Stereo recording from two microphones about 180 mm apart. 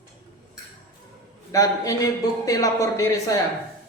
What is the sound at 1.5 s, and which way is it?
Speech, 20° left (ahead or behind).